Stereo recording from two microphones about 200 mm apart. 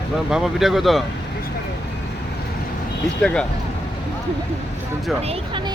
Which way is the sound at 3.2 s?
5° left (ahead or behind).